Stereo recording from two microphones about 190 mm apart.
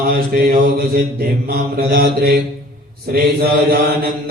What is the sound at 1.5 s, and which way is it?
Mantra, 55° right (ahead or behind).